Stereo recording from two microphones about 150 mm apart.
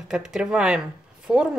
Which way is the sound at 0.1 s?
5° right (ahead or behind).